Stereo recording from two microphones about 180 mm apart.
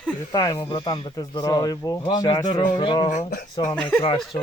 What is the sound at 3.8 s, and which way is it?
Speech, 10° left (ahead or behind).